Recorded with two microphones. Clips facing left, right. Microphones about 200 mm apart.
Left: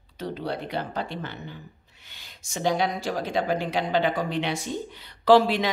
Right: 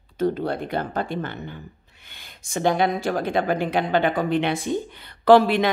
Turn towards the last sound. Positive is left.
turn(degrees=-55)  # may be behind; listen again after turning